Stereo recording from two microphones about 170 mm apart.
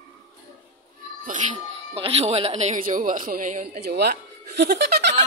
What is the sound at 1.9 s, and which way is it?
Speech, 35° right (ahead or behind).